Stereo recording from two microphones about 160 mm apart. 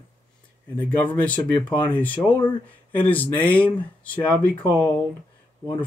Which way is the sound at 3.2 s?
10° left (ahead or behind).